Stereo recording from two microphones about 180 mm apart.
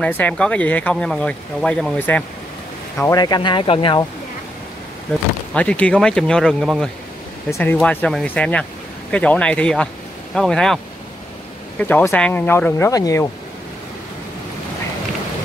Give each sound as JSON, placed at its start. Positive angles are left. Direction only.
{"t": 0.0, "sound": "speech", "side_deg": 5}
{"t": 5.5, "sound": "speech", "side_deg": 5}
{"t": 11.8, "sound": "speech", "side_deg": 10}